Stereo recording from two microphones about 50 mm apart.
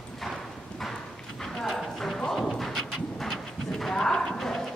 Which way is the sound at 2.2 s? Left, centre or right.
Centre.